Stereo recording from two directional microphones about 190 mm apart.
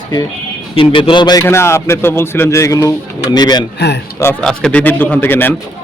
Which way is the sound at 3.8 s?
60° left (ahead or behind).